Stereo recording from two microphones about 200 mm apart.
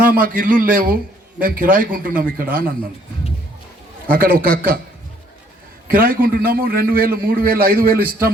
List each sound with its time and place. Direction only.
0.0 s a man's voice: 45° right (ahead or behind)
4.1 s a man's voice: 45° right (ahead or behind)
5.9 s a man's voice: 45° right (ahead or behind)